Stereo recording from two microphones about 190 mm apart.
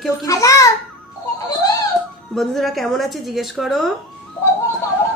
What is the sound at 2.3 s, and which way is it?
Speech, centre (ahead or behind).